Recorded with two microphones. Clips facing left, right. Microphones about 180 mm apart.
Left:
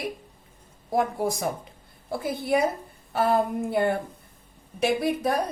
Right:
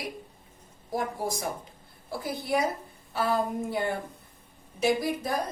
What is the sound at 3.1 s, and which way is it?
A woman's voice, 55° left (ahead or behind).